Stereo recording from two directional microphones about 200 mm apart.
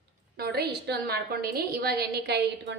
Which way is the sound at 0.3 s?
50° right (ahead or behind).